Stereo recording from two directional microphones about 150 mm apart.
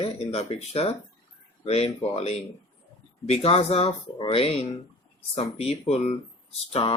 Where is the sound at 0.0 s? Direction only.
40° left (ahead or behind).